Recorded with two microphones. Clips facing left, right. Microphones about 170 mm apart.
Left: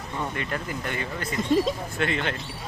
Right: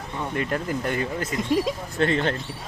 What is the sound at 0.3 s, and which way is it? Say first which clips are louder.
Speech: right 5 dB; 45° right (ahead or behind).